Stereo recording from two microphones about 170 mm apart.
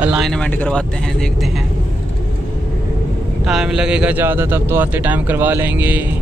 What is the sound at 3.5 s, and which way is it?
Speech, 5° right (ahead or behind).